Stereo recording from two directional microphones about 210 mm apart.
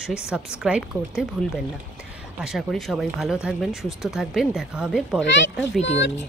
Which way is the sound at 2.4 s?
Centre (ahead or behind).